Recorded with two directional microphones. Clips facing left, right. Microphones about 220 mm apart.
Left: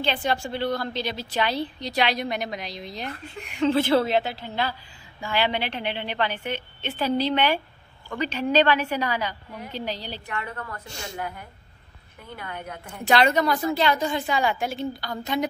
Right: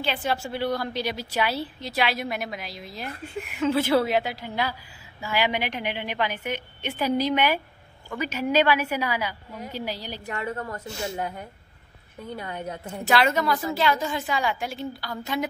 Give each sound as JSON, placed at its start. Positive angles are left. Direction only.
{"t": 0.0, "sound": "a woman's voice", "side_deg": -5}
{"t": 10.2, "sound": "a woman's voice", "side_deg": -30}
{"t": 13.0, "sound": "a woman's voice", "side_deg": -5}